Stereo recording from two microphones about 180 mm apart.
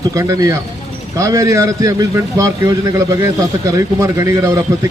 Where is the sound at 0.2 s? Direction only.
20° right (ahead or behind).